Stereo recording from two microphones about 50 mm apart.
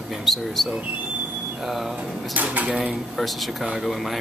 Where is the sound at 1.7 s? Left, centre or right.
Centre.